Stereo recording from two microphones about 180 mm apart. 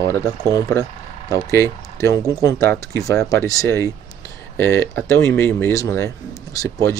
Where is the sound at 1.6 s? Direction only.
15° left (ahead or behind).